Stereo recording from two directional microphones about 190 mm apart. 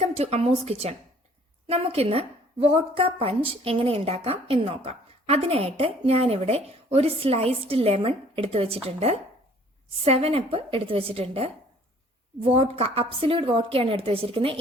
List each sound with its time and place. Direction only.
0.2 s a woman's voice: 35° right (ahead or behind)